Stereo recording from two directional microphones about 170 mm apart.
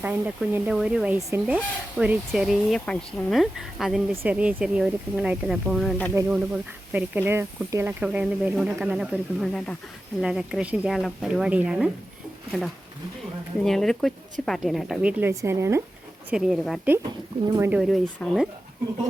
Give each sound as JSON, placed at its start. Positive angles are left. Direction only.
{"t": 0.0, "sound": "speech", "side_deg": -10}
{"t": 15.2, "sound": "speech", "side_deg": -15}
{"t": 16.3, "sound": "speech", "side_deg": 0}